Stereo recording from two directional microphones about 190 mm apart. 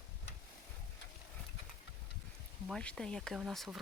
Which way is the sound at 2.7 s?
5° left (ahead or behind).